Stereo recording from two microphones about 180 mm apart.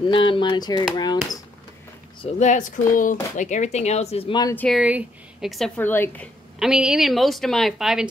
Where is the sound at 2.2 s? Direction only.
40° left (ahead or behind); by 4.6 s 25° left (ahead or behind).